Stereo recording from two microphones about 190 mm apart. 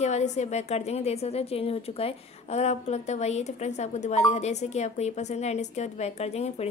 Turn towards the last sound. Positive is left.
turn(degrees=35)  # may be behind; listen again after turning